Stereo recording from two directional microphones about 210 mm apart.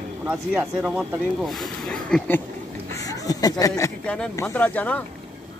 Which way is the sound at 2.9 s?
15° left (ahead or behind).